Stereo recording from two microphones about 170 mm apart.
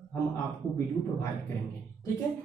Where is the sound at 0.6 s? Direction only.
25° right (ahead or behind).